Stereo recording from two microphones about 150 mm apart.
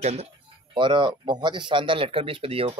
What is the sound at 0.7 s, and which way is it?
Speech, 30° right (ahead or behind).